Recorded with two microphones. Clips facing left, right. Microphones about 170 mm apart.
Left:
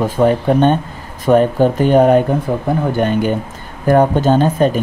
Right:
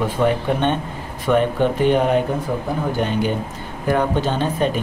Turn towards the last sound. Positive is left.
turn(degrees=45)  # may be behind; listen again after turning